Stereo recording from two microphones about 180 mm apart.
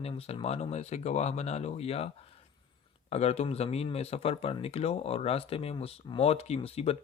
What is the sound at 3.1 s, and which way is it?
Speech, 35° left (ahead or behind).